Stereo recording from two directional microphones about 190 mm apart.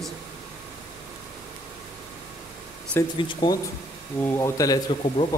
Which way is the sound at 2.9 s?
10° left (ahead or behind).